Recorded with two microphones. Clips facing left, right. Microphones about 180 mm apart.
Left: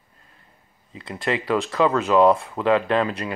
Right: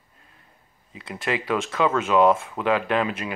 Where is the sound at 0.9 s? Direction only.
25° left (ahead or behind).